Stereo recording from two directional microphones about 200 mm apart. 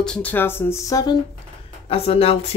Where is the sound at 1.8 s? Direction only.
30° left (ahead or behind).